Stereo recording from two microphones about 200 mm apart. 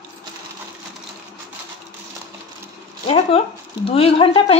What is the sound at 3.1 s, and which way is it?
Speech, 30° left (ahead or behind).